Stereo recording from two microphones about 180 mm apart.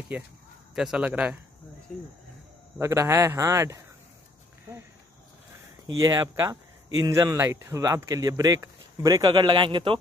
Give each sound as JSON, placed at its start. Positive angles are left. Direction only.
{"t": 0.1, "sound": "a man's voice", "side_deg": -5}
{"t": 2.8, "sound": "speech", "side_deg": -15}
{"t": 5.9, "sound": "speech", "side_deg": -20}